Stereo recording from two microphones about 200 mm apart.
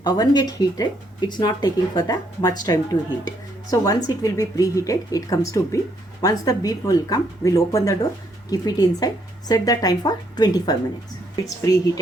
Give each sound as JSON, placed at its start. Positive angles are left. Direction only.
{"t": 0.0, "sound": "a woman's voice", "side_deg": 20}